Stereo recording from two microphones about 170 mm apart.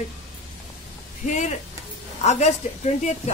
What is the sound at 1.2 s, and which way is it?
A woman's voice, 45° left (ahead or behind).